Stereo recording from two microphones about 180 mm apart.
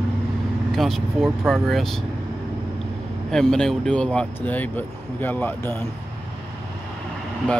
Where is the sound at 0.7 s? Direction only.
Centre (ahead or behind).